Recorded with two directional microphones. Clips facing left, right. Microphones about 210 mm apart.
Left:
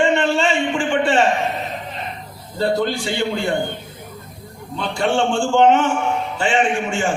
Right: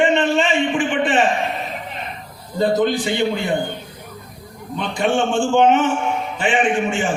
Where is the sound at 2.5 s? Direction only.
15° right (ahead or behind).